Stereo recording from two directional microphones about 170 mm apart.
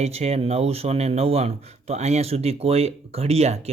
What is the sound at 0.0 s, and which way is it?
Speech, 40° right (ahead or behind).